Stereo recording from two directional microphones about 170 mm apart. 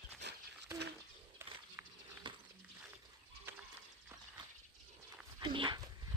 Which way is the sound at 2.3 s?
30° right (ahead or behind).